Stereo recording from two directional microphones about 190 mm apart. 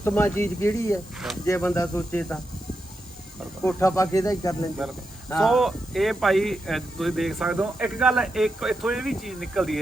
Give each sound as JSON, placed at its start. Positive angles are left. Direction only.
{"t": 0.0, "sound": "speech", "side_deg": 10}
{"t": 3.6, "sound": "speech", "side_deg": 15}
{"t": 5.4, "sound": "speech", "side_deg": 0}